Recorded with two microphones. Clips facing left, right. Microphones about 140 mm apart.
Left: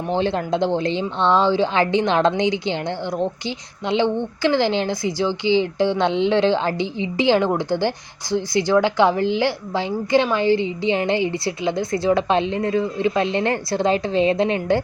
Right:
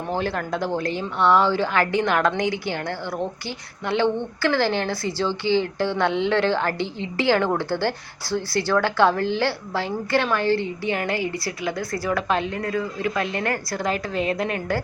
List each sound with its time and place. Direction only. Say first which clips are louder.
0.1 s a woman's voice: left 5 dB; 25° left (ahead or behind)